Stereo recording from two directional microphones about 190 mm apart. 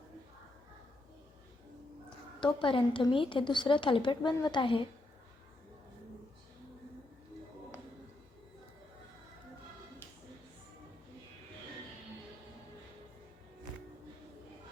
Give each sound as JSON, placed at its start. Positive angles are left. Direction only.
{"t": 2.4, "sound": "speech", "side_deg": 25}